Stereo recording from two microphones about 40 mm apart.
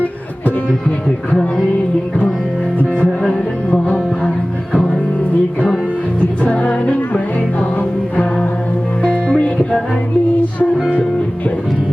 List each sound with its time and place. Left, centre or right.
0.9 s speech: left
3.0 s music: left
6.4 s music: left
9.0 s music: left